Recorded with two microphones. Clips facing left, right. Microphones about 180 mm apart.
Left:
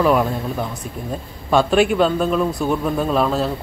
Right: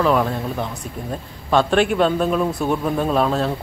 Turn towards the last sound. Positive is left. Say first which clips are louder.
# even
turn(degrees=0)  # may be behind; listen again after turning